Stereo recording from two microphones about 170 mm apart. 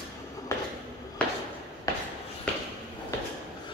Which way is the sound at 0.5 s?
15° left (ahead or behind).